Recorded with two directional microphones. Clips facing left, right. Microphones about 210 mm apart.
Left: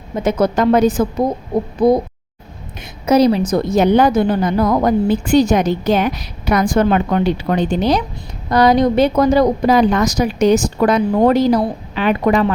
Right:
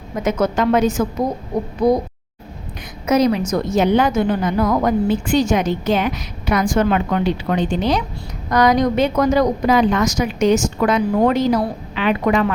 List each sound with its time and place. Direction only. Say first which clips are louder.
0.2 s a woman's voice: left 3 dB; 30° left (ahead or behind)
3.1 s a woman's voice: left 3 dB; 30° left (ahead or behind)